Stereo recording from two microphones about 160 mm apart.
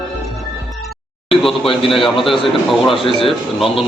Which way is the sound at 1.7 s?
35° left (ahead or behind).